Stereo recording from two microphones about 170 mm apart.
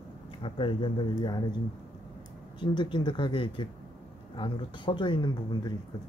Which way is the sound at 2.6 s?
25° left (ahead or behind).